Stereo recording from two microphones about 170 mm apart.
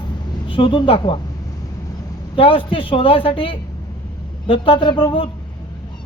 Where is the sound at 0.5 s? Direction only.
30° left (ahead or behind).